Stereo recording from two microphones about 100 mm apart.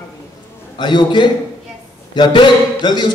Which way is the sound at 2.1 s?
50° left (ahead or behind).